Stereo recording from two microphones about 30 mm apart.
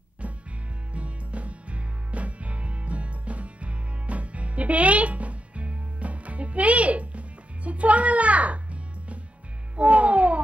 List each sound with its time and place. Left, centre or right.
0.2 s music: right
9.8 s music: right